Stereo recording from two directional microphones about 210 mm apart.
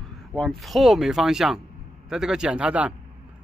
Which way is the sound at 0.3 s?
Centre (ahead or behind).